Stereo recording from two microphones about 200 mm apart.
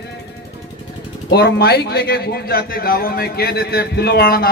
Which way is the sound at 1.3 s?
55° left (ahead or behind).